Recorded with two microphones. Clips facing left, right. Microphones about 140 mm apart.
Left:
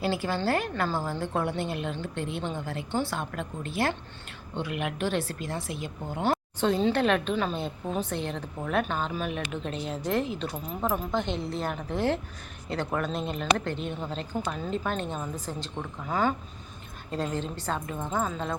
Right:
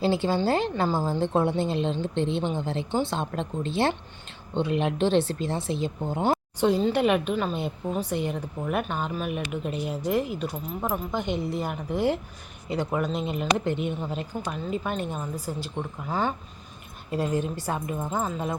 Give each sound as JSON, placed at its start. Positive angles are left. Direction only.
{"t": 0.0, "sound": "a woman's voice", "side_deg": -25}